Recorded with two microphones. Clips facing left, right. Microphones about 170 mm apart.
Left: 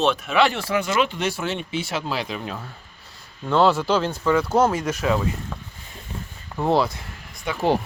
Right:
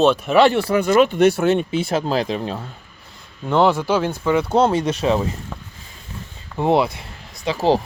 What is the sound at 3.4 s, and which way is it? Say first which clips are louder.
Speech: right 2 dB; 15° right (ahead or behind).